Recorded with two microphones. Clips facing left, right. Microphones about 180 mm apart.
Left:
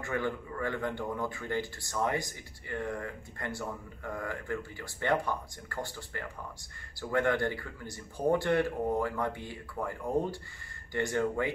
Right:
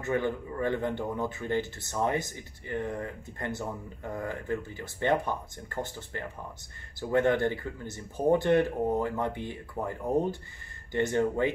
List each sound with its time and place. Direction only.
0.0 s speech: 20° right (ahead or behind)